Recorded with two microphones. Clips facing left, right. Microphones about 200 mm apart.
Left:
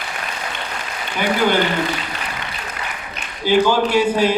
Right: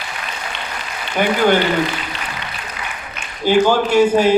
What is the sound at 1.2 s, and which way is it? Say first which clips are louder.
Speech: right 3 dB; 50° right (ahead or behind).